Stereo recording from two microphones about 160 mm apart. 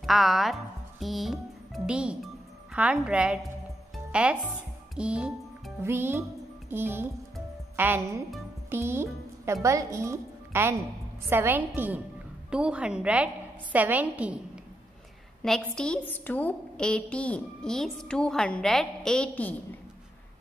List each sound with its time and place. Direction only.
0.0 s a woman's voice: centre (ahead or behind)
3.9 s music: 5° right (ahead or behind)
4.9 s a woman's voice: 5° right (ahead or behind)
15.4 s a woman's voice: 5° left (ahead or behind)